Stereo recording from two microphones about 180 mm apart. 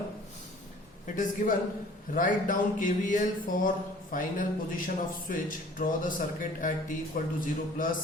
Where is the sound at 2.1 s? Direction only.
45° left (ahead or behind).